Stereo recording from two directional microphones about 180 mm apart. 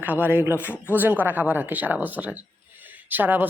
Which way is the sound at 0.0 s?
10° right (ahead or behind).